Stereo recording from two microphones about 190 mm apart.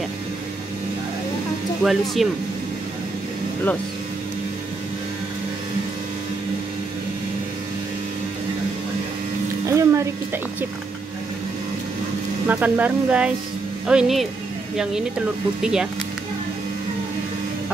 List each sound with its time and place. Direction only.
1.8 s speech: centre (ahead or behind)
9.7 s a sound: 15° right (ahead or behind)
12.4 s speech: 10° right (ahead or behind)
15.6 s speech: 5° right (ahead or behind)